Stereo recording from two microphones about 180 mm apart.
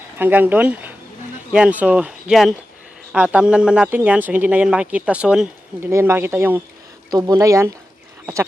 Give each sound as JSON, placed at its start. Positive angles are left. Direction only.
{"t": 0.2, "sound": "speech", "side_deg": -10}